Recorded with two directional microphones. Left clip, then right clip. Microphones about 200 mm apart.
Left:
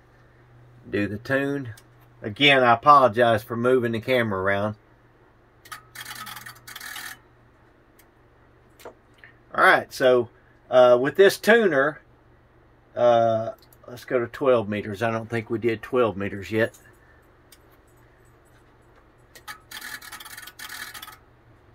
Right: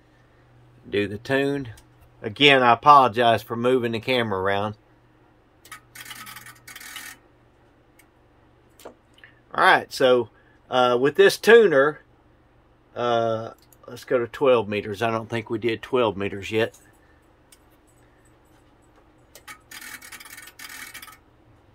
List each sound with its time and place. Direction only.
0.8 s speech: 15° right (ahead or behind)
3.9 s speech: 20° right (ahead or behind)
8.8 s squish: 40° right (ahead or behind)
9.7 s speech: 20° right (ahead or behind)